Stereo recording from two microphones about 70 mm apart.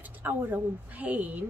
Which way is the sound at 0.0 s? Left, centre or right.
Right.